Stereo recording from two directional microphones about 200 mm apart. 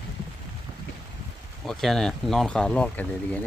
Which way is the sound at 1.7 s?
Centre (ahead or behind).